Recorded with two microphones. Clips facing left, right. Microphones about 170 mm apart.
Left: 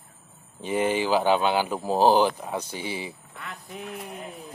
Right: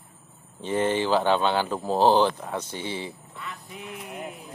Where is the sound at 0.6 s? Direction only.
10° left (ahead or behind).